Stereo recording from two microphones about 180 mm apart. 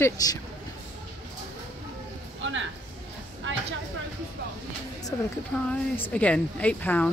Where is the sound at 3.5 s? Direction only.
90° right.